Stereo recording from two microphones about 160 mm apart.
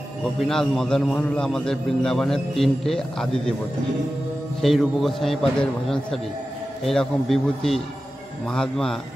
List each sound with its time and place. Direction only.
0.2 s a man's voice: centre (ahead or behind)
4.6 s a man's voice: centre (ahead or behind)